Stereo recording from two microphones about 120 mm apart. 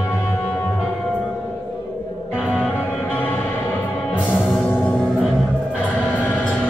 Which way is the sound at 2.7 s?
15° left (ahead or behind).